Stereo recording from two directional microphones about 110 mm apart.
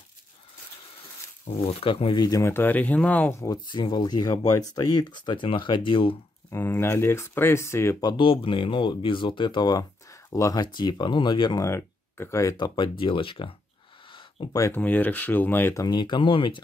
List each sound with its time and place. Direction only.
1.4 s speech: 65° left (ahead or behind); by 2.4 s 40° left (ahead or behind)
2.4 s speech: 20° left (ahead or behind)
3.3 s speech: 35° left (ahead or behind)
6.5 s speech: 20° left (ahead or behind)
8.2 s speech: 50° left (ahead or behind)
11.6 s speech: 25° left (ahead or behind)
12.5 s speech: 45° left (ahead or behind)
14.5 s speech: 30° left (ahead or behind)
14.8 s speech: 15° left (ahead or behind)
15.9 s speech: 45° left (ahead or behind)